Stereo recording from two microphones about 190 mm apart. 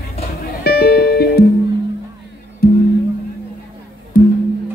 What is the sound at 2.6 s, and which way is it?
Music, 55° left (ahead or behind).